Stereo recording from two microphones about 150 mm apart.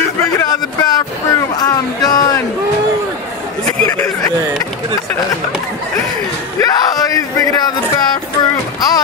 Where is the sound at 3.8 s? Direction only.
20° left (ahead or behind).